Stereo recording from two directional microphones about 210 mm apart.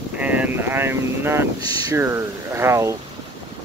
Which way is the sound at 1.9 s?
15° right (ahead or behind).